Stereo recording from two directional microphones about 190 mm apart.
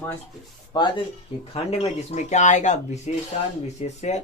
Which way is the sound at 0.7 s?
20° left (ahead or behind).